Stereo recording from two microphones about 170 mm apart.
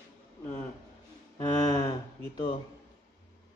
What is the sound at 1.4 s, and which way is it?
Speech, 25° left (ahead or behind).